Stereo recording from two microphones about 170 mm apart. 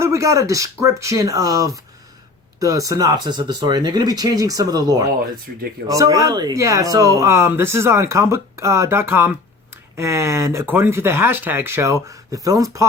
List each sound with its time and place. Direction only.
0.0 s speech: 20° right (ahead or behind)